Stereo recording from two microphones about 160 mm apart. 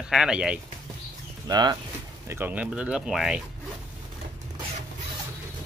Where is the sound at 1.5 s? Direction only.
25° right (ahead or behind).